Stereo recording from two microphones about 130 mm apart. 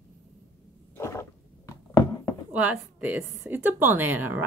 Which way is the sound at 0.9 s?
20° left (ahead or behind).